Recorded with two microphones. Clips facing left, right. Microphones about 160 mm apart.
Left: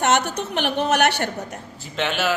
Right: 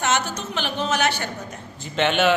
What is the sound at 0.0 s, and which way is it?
A woman's voice, 60° left (ahead or behind).